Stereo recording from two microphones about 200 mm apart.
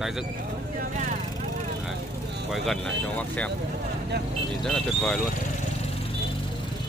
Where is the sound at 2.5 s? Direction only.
5° left (ahead or behind).